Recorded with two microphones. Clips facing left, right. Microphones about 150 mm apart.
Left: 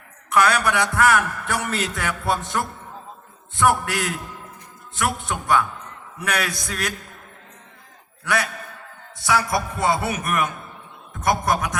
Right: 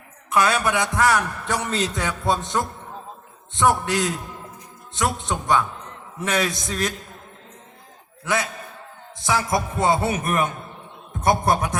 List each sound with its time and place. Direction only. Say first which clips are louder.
0.3 s a man's voice: left 1 dB; 20° right (ahead or behind)
8.2 s a man's voice: even; 20° right (ahead or behind)